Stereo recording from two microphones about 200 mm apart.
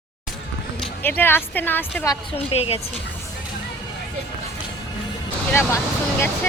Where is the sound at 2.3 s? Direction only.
30° left (ahead or behind).